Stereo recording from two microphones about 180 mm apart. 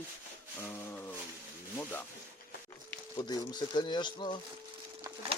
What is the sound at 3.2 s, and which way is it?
Speech, 20° left (ahead or behind).